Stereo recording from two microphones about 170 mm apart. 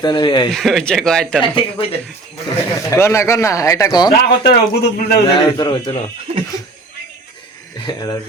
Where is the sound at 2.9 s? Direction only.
15° left (ahead or behind).